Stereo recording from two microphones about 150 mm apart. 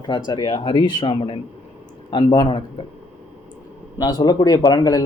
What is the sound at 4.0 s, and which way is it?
Speech, 25° left (ahead or behind).